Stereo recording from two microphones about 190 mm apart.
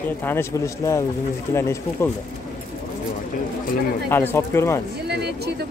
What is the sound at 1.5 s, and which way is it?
Speech, 15° left (ahead or behind).